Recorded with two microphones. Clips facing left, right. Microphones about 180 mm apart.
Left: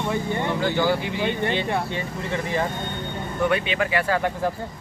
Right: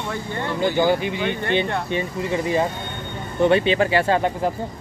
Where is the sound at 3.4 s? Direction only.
30° right (ahead or behind).